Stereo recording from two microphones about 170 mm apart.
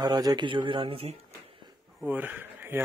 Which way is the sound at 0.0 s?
20° right (ahead or behind).